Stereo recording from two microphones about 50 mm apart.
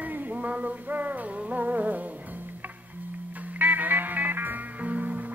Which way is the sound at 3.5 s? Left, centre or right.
Right.